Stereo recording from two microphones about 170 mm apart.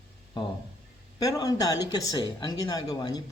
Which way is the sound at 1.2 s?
20° left (ahead or behind).